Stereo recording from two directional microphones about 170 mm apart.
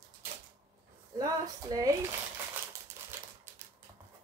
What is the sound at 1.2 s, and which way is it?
Speech, 20° right (ahead or behind).